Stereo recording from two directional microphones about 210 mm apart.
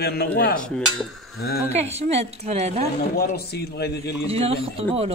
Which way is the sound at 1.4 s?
45° left (ahead or behind).